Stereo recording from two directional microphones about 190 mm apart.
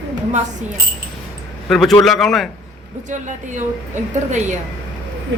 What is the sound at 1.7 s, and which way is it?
Speech, centre (ahead or behind).